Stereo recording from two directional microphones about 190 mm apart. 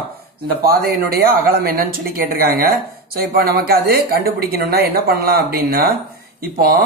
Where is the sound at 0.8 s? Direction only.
55° right (ahead or behind).